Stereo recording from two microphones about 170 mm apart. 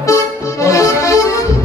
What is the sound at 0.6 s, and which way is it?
Accordion, 20° left (ahead or behind).